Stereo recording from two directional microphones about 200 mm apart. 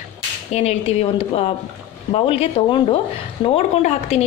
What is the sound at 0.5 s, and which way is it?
Speech, 30° left (ahead or behind).